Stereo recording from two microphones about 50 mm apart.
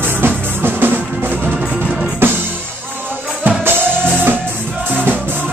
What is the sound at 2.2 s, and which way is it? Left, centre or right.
Music, right.